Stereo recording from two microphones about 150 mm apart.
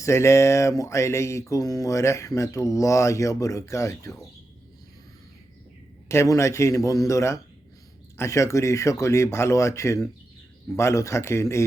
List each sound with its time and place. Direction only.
0.0 s speech: 20° left (ahead or behind)
6.1 s speech: 20° left (ahead or behind)